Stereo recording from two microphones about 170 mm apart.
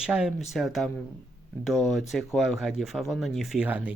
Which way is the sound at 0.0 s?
5° right (ahead or behind).